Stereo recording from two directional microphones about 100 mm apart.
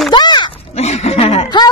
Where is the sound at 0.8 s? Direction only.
90° left.